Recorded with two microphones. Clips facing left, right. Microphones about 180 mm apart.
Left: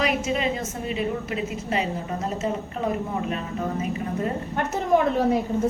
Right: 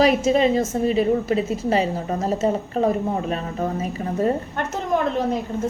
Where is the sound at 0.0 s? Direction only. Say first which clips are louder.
Right 7 dB; 35° right (ahead or behind).